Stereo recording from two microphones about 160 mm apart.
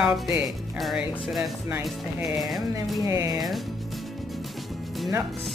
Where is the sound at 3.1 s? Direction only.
25° right (ahead or behind).